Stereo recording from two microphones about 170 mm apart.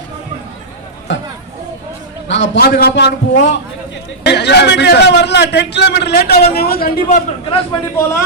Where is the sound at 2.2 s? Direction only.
90° left; by 3.1 s 75° left (ahead or behind).